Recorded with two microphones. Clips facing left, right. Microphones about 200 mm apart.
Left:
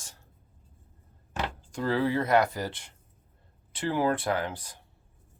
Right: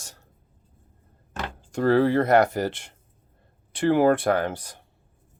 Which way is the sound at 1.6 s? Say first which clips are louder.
Right 9 dB; 65° right (ahead or behind).